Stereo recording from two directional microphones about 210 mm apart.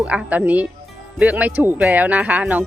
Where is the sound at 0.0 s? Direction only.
5° right (ahead or behind).